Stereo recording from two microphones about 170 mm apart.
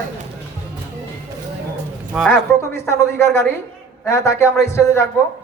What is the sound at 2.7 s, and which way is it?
A woman's voice, 15° left (ahead or behind).